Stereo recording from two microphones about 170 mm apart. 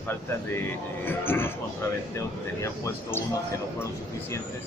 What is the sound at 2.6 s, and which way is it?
Speech, 15° left (ahead or behind).